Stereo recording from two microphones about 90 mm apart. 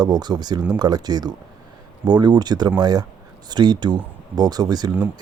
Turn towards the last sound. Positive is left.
turn(degrees=-50)  # may be behind; listen again after turning